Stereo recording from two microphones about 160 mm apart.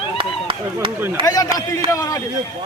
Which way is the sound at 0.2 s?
30° right (ahead or behind).